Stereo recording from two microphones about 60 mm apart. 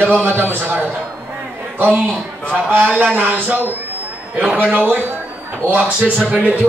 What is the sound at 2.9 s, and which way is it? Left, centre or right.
Speech, right.